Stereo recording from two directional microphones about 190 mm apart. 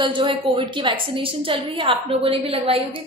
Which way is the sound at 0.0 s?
25° right (ahead or behind).